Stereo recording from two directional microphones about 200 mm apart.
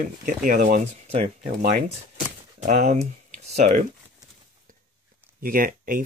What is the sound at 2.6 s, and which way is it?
Speech, 35° right (ahead or behind).